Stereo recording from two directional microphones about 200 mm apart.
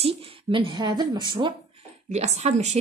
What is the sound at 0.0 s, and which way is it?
A woman's voice, 25° right (ahead or behind).